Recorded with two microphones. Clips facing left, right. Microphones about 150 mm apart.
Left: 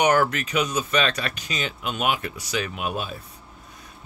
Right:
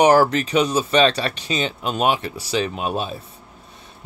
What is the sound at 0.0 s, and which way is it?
Speech, 30° right (ahead or behind).